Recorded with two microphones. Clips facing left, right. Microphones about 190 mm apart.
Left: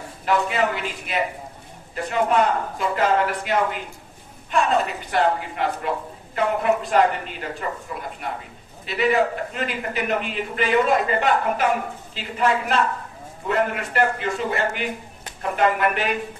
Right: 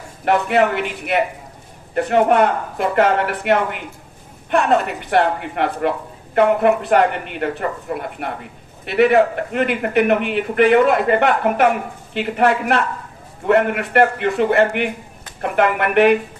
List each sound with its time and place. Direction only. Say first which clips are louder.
0.2 s a man's voice: right 6 dB; 65° right (ahead or behind)